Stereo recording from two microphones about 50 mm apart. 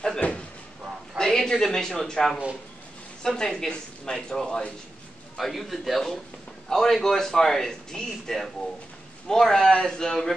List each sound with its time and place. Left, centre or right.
0.2 s a sound: left
1.1 s a man's voice: centre
5.4 s a man's voice: centre